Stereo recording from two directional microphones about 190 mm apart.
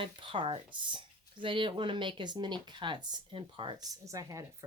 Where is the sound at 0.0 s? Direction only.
25° right (ahead or behind).